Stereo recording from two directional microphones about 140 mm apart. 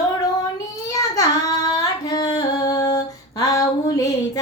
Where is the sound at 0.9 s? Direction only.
25° left (ahead or behind).